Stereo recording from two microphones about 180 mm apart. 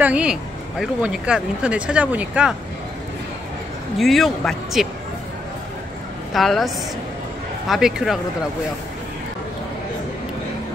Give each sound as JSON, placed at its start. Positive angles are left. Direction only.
{"t": 0.0, "sound": "speech", "side_deg": -5}
{"t": 4.0, "sound": "speech", "side_deg": 0}
{"t": 6.3, "sound": "speech", "side_deg": 0}